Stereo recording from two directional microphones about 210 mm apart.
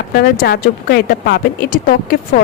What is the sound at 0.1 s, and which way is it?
Speech, 45° left (ahead or behind).